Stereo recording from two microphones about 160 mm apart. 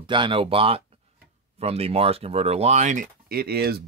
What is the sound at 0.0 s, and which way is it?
Speech, 30° right (ahead or behind).